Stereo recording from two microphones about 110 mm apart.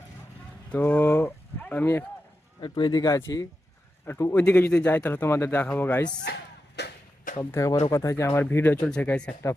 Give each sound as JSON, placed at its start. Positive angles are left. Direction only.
{"t": 0.7, "sound": "speech", "side_deg": 15}
{"t": 2.6, "sound": "a man's voice", "side_deg": 50}
{"t": 2.9, "sound": "speech", "side_deg": 35}
{"t": 7.5, "sound": "speech", "side_deg": 25}